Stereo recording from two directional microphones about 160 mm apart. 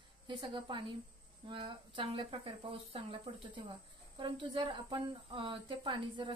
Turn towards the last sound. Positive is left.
turn(degrees=-30)  # may be behind; listen again after turning